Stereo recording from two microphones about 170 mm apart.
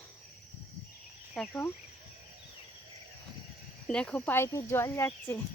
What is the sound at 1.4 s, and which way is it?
Speech, centre (ahead or behind).